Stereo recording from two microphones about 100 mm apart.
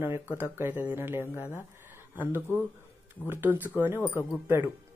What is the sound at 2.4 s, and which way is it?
Speech, 20° left (ahead or behind).